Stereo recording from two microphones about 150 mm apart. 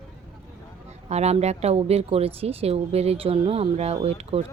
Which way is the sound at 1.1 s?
45° right (ahead or behind).